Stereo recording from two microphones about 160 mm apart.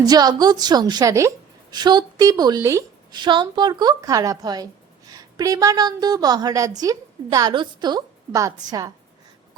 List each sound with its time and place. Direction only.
0.0 s a woman's voice: 25° right (ahead or behind)